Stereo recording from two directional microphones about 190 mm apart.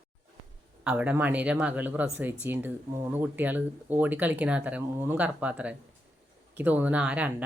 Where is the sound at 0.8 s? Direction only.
10° right (ahead or behind).